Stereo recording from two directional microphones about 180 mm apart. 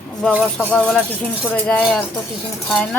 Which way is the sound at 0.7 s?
Centre (ahead or behind).